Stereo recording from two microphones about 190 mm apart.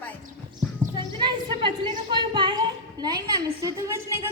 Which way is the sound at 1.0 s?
25° right (ahead or behind).